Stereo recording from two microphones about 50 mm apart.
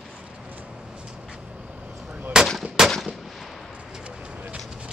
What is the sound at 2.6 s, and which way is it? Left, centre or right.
Gunshot, centre.